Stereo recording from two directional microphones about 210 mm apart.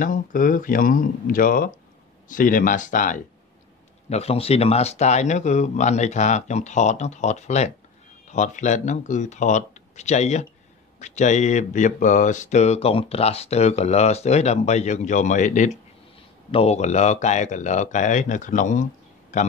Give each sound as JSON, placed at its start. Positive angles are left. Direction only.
{"t": 0.0, "sound": "speech", "side_deg": 40}